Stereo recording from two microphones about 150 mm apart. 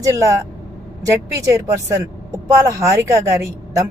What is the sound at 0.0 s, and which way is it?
Speech, 20° right (ahead or behind).